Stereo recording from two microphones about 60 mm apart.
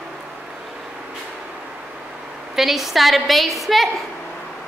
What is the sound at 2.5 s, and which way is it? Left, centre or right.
A woman's voice, centre.